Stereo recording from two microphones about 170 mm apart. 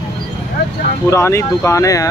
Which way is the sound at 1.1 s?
15° left (ahead or behind).